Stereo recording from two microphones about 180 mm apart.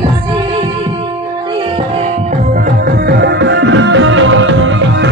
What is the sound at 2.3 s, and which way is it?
Music, 50° right (ahead or behind).